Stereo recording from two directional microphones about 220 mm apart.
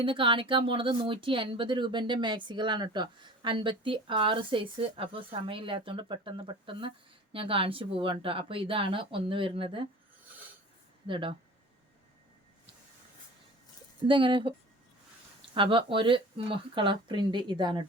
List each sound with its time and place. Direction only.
0.0 s speech: 25° right (ahead or behind)
11.0 s speech: 20° right (ahead or behind)
14.1 s speech: 20° right (ahead or behind)